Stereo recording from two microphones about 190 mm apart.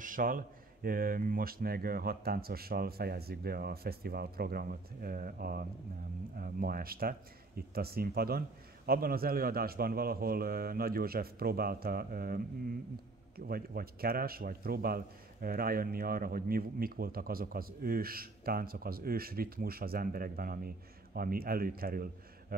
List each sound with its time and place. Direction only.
0.0 s a sound: 45° right (ahead or behind)
0.8 s a man's voice: 50° right (ahead or behind)
13.5 s a man's voice: 50° right (ahead or behind)